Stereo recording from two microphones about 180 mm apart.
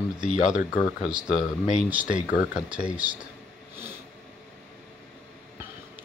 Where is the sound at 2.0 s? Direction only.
50° left (ahead or behind).